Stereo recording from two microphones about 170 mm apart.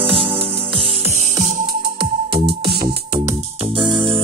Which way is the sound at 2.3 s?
30° right (ahead or behind).